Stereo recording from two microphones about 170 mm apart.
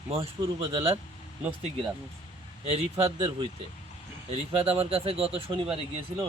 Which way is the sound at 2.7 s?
35° right (ahead or behind).